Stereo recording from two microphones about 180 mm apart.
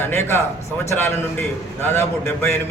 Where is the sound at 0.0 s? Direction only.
15° left (ahead or behind).